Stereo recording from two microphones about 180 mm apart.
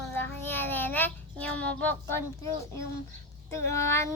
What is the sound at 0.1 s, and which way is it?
Child singing, 10° left (ahead or behind).